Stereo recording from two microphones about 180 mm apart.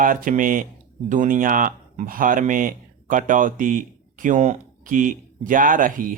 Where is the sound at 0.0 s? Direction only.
50° right (ahead or behind).